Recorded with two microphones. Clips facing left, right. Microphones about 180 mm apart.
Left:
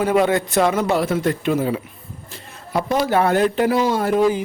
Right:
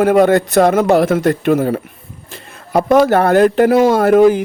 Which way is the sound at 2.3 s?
55° right (ahead or behind).